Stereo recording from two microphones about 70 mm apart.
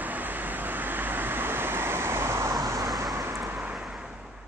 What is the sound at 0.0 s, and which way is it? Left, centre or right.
Vehicle, right.